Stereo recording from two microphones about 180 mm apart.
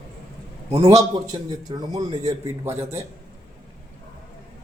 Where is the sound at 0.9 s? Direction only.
20° right (ahead or behind).